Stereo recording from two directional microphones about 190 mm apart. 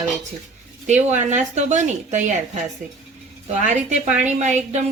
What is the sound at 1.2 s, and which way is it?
A woman's voice, 40° right (ahead or behind).